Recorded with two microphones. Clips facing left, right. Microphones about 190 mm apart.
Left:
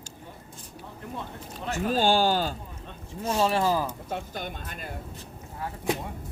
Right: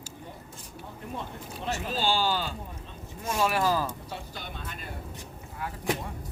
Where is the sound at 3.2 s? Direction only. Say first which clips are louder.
Left 2 dB; 30° left (ahead or behind).